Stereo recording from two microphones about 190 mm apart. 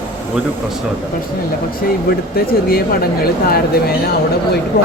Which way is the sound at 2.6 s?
55° left (ahead or behind).